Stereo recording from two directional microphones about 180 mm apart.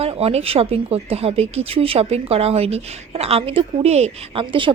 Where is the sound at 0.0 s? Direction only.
35° right (ahead or behind).